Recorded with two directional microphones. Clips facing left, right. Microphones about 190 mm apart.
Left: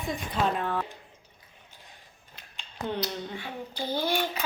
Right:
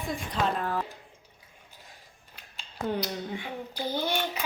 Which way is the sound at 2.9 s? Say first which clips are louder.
Right 1 dB; 15° right (ahead or behind).